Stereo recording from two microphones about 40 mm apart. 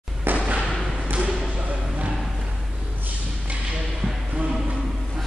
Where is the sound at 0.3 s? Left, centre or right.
Right.